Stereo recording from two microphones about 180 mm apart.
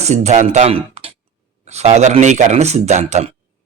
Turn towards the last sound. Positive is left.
turn(degrees=-40)  # may be behind; listen again after turning